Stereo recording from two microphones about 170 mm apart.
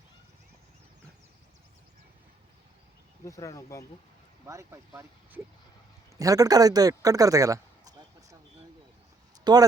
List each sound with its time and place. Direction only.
3.2 s speech: 20° left (ahead or behind)
4.4 s a man's voice: 20° right (ahead or behind)
9.4 s speech: 25° right (ahead or behind)